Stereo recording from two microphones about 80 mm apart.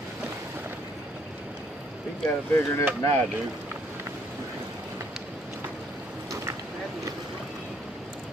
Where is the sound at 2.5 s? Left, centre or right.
Left.